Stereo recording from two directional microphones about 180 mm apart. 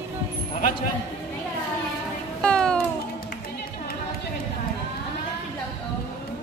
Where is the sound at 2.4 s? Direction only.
5° left (ahead or behind).